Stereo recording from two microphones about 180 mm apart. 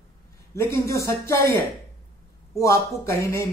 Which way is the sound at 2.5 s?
15° left (ahead or behind).